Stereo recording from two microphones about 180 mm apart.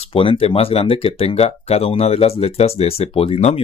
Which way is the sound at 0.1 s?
30° left (ahead or behind).